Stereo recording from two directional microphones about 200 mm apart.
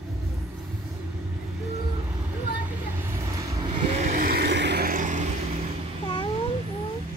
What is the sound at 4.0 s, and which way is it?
Vehicle, 40° right (ahead or behind).